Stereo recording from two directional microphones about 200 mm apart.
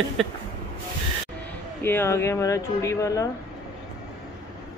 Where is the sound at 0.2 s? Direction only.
Centre (ahead or behind).